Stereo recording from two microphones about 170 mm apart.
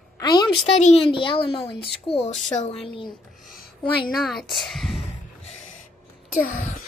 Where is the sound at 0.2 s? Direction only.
25° left (ahead or behind).